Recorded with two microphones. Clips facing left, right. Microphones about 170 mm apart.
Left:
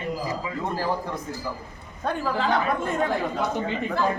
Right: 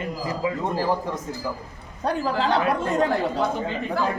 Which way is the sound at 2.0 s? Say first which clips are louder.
Right 2 dB; 35° right (ahead or behind).